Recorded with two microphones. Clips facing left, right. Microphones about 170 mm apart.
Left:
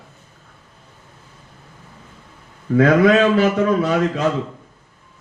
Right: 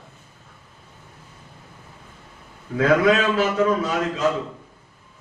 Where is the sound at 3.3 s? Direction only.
65° left (ahead or behind).